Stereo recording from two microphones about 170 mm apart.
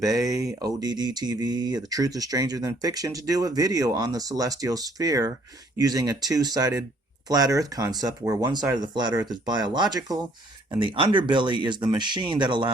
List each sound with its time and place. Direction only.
0.0 s speech: 20° right (ahead or behind)